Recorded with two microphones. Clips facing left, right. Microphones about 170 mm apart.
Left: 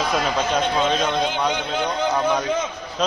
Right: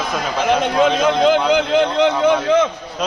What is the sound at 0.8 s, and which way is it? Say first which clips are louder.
A man's voice: right 7 dB; 90° right.